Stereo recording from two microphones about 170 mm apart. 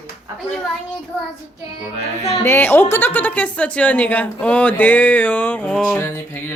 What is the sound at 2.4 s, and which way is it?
A woman's voice, 15° left (ahead or behind).